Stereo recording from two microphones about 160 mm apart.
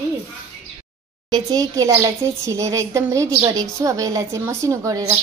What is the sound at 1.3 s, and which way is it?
Speech, 25° right (ahead or behind).